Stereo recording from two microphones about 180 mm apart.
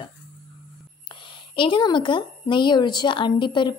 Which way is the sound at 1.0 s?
25° left (ahead or behind).